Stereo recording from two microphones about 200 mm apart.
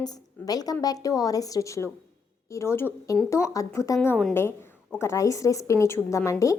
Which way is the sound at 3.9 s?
5° left (ahead or behind).